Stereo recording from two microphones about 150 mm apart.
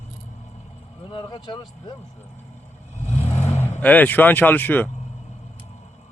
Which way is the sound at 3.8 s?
10° left (ahead or behind).